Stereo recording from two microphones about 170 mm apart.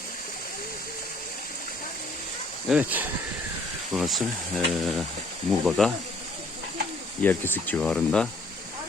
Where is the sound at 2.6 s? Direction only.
10° right (ahead or behind).